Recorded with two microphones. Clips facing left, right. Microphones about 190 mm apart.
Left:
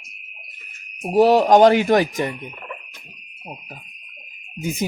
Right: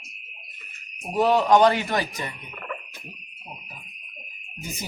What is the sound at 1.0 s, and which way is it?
A man's voice, 35° left (ahead or behind).